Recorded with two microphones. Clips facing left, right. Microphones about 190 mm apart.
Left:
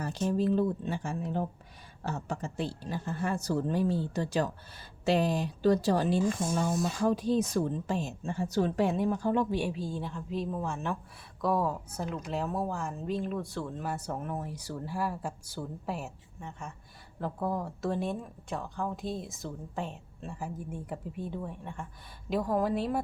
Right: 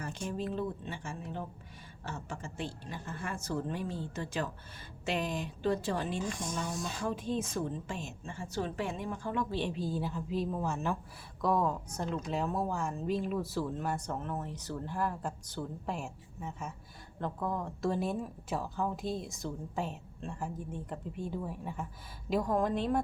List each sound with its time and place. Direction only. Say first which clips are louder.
0.0 s a woman's voice: left 8 dB; 35° left (ahead or behind)
9.5 s a woman's voice: left 3 dB; 10° left (ahead or behind)
9.7 s speech: right 1 dB; centre (ahead or behind)
17.2 s speech: left 3 dB; 10° left (ahead or behind)